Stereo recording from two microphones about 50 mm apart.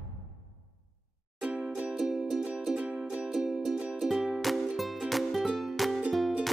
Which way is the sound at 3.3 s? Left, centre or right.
Centre.